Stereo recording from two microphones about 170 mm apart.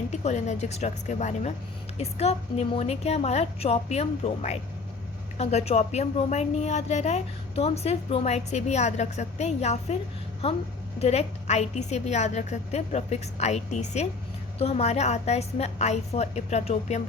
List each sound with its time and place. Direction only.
0.1 s a woman's voice: 40° left (ahead or behind)